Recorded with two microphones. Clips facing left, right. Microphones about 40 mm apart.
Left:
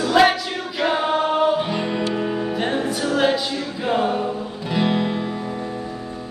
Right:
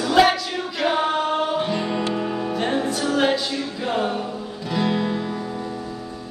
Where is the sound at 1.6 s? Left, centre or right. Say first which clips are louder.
Even; centre.